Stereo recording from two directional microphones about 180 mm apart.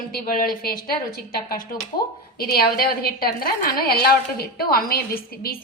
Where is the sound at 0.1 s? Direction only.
50° left (ahead or behind).